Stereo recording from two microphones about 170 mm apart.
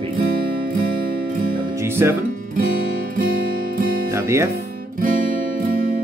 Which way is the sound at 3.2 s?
55° right (ahead or behind).